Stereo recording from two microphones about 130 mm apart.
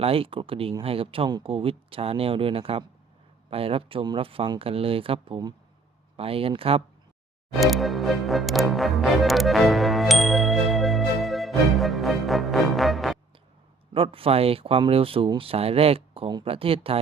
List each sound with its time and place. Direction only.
0.0 s speech: 45° right (ahead or behind)
7.6 s music: centre (ahead or behind)
13.9 s speech: 45° right (ahead or behind)